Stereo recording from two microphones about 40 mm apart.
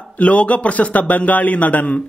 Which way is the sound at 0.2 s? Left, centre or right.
Left.